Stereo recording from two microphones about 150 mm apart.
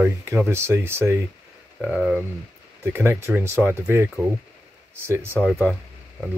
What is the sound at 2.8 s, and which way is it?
Speech, 15° right (ahead or behind).